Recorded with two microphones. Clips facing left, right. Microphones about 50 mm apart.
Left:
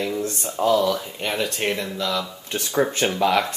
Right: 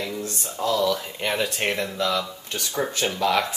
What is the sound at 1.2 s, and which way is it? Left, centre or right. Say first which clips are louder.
Speech: even; centre.